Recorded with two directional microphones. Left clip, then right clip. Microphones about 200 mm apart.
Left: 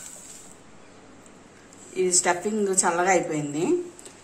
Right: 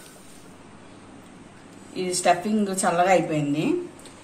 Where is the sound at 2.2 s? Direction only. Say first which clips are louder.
Right 3 dB; 35° left (ahead or behind).